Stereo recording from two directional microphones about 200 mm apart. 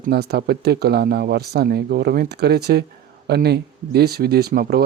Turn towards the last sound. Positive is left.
turn(degrees=-50)  # may be behind; listen again after turning